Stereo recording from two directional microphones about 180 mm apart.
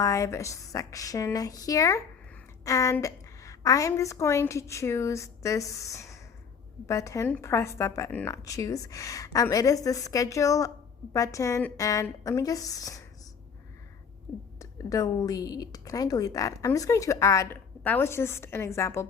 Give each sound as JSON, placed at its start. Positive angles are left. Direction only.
{"t": 0.0, "sound": "a woman's voice", "side_deg": 15}
{"t": 14.6, "sound": "a woman's voice", "side_deg": 20}